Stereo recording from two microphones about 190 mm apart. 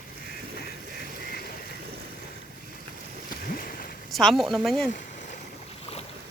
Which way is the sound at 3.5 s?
50° left (ahead or behind).